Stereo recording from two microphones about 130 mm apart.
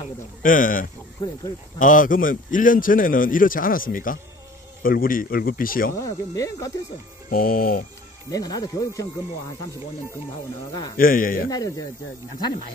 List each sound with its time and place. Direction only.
0.4 s a man's voice: 90° left
5.9 s speech: 25° left (ahead or behind)
7.2 s a man's voice: 90° left
8.3 s speech: 30° left (ahead or behind)
11.0 s a man's voice: 90° left
11.5 s speech: 30° left (ahead or behind)